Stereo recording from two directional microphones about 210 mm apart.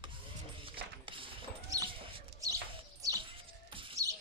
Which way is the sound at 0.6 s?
25° right (ahead or behind).